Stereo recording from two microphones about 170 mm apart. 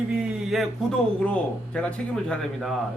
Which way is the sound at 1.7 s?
5° left (ahead or behind).